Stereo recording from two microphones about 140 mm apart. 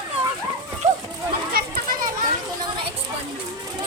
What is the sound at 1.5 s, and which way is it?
Children playing, 85° right.